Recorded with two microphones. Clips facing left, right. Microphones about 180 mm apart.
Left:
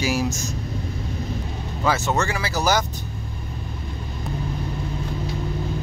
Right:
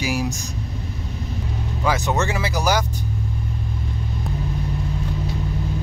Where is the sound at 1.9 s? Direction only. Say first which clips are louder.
Even; 20° right (ahead or behind).